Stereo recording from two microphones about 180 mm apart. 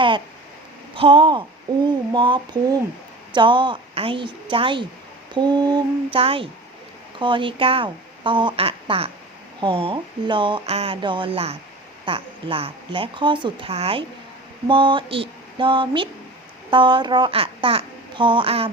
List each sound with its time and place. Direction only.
0.9 s speech: 30° right (ahead or behind)